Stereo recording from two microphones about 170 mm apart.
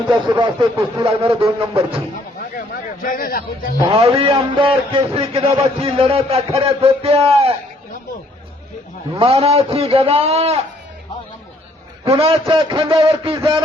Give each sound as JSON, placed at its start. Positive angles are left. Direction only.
{"t": 0.1, "sound": "a sound", "side_deg": -25}
{"t": 0.9, "sound": "a man's voice", "side_deg": -30}
{"t": 2.4, "sound": "speech", "side_deg": 55}
{"t": 3.9, "sound": "a man's voice", "side_deg": -35}
{"t": 9.1, "sound": "a man's voice", "side_deg": -35}
{"t": 12.0, "sound": "a man's voice", "side_deg": -35}